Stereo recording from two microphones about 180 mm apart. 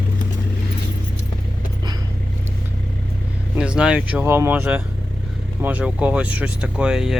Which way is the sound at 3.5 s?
5° right (ahead or behind).